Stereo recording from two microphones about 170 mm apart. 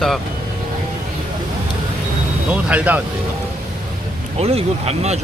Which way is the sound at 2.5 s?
10° right (ahead or behind).